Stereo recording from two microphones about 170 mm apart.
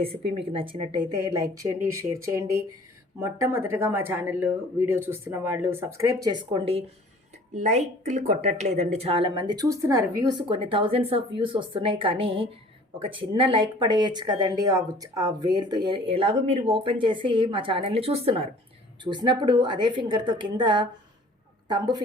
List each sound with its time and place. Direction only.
0.0 s speech: 35° right (ahead or behind)